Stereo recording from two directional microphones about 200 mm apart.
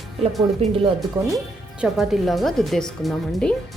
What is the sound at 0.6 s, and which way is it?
Speech, 30° right (ahead or behind).